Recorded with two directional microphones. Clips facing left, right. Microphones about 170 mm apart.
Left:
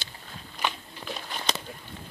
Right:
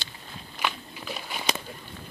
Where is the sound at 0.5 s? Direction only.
10° right (ahead or behind).